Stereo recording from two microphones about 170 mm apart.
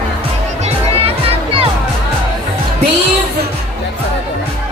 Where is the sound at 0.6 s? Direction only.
35° right (ahead or behind).